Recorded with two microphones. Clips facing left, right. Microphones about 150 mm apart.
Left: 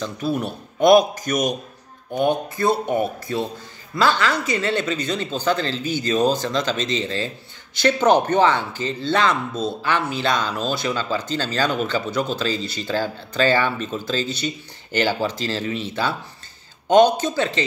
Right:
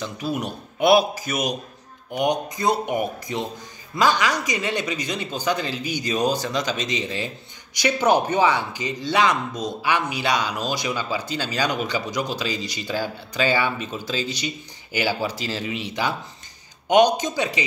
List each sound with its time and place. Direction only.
0.0 s speech: 10° right (ahead or behind)